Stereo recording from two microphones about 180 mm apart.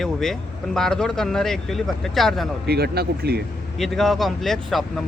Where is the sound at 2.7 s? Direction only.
60° right (ahead or behind).